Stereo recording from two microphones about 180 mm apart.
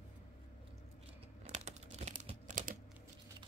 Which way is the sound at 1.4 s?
40° right (ahead or behind).